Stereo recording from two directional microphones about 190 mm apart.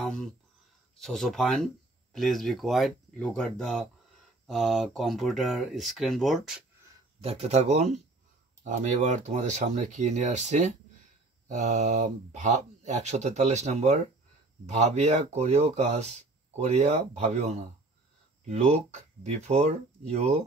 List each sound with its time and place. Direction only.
0.0 s a sound: 5° left (ahead or behind)
0.9 s speech: centre (ahead or behind)
7.2 s speech: 35° right (ahead or behind)